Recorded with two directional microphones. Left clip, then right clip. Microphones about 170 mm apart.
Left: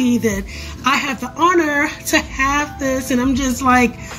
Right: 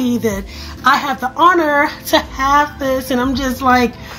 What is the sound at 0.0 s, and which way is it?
A woman's voice, 25° left (ahead or behind).